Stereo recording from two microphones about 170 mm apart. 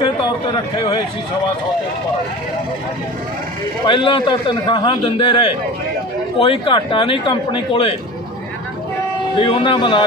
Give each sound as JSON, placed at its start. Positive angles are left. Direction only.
{"t": 3.8, "sound": "a man's voice", "side_deg": 30}
{"t": 9.4, "sound": "a man's voice", "side_deg": 30}